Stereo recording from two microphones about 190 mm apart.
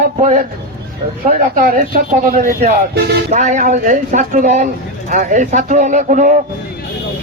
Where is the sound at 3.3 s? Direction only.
40° right (ahead or behind).